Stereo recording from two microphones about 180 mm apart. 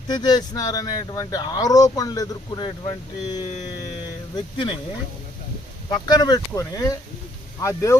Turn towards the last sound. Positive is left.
turn(degrees=15)  # may be behind; listen again after turning